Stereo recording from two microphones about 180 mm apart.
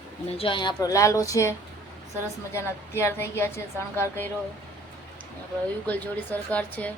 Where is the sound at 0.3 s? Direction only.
30° left (ahead or behind).